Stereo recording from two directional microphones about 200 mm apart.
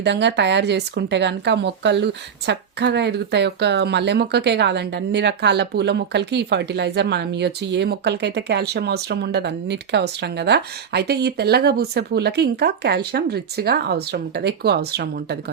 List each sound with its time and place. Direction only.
0.0 s speech: 60° right (ahead or behind)